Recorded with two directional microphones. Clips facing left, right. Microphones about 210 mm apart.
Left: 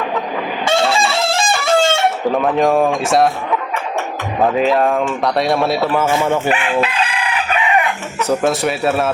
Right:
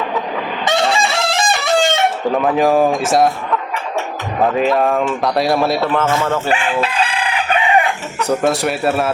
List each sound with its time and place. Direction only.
0.7 s fowl: 20° right (ahead or behind)
1.4 s chicken: 20° right (ahead or behind)
2.3 s speech: centre (ahead or behind)
4.4 s speech: centre (ahead or behind)
6.5 s chicken: 30° right (ahead or behind)
8.4 s speech: centre (ahead or behind)